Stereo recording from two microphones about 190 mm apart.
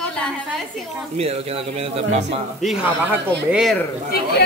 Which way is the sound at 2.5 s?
Centre (ahead or behind).